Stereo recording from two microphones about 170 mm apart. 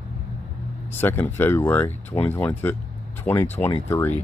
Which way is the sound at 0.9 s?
15° left (ahead or behind).